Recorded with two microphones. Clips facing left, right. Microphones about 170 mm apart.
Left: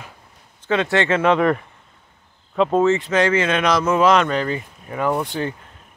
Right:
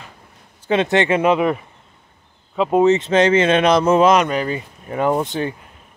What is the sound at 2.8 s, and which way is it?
Speech, 20° right (ahead or behind).